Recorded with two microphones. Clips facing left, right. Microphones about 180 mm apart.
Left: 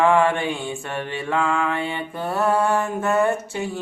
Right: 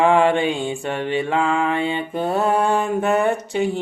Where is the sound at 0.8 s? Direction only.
20° right (ahead or behind).